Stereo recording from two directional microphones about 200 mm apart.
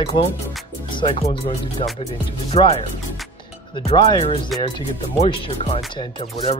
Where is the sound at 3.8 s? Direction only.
30° left (ahead or behind).